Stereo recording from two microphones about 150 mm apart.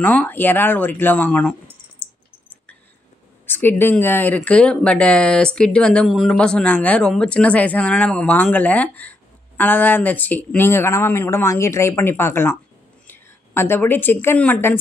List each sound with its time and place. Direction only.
0.0 s speech: 10° left (ahead or behind)
3.4 s a woman's voice: 15° left (ahead or behind)